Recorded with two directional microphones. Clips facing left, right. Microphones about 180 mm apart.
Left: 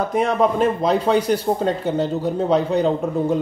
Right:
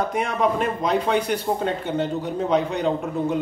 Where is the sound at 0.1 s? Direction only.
35° left (ahead or behind).